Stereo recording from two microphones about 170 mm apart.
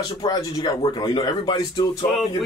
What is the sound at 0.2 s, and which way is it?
Speech, 25° left (ahead or behind).